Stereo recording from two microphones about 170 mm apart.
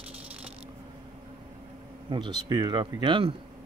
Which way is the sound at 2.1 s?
25° right (ahead or behind).